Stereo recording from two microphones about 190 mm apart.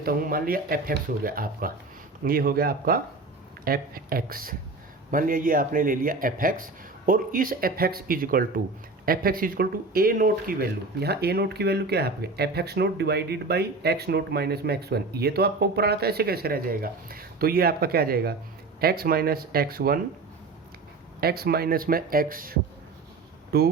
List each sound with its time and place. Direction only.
0.0 s a man's voice: 50° right (ahead or behind)
21.2 s a man's voice: 55° right (ahead or behind)